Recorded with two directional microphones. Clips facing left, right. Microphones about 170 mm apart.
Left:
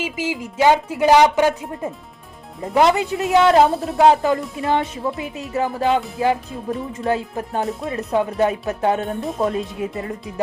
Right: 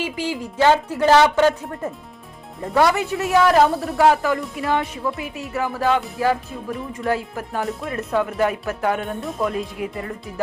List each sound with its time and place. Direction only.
0.0 s speech: 15° left (ahead or behind)